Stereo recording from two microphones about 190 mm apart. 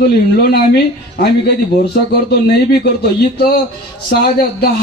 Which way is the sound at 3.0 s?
55° left (ahead or behind).